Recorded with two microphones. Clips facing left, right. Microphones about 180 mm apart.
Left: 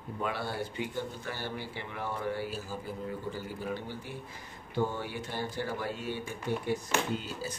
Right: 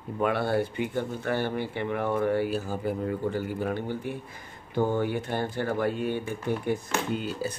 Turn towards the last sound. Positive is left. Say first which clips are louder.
# right 5 dB
turn(degrees=-60)  # may be behind; listen again after turning